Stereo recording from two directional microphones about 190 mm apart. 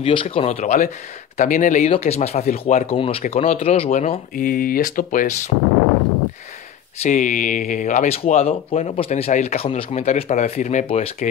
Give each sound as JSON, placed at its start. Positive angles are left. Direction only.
{"t": 0.0, "sound": "speech", "side_deg": 25}
{"t": 7.0, "sound": "speech", "side_deg": 40}